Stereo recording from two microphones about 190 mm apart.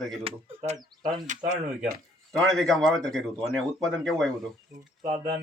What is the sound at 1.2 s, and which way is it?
Speech, 40° right (ahead or behind).